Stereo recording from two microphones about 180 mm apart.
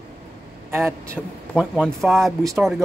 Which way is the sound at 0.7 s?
15° right (ahead or behind).